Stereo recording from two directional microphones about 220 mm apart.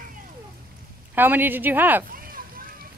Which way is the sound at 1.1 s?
10° right (ahead or behind).